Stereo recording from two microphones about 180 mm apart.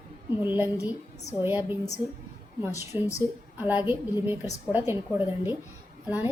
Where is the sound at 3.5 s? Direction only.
10° right (ahead or behind).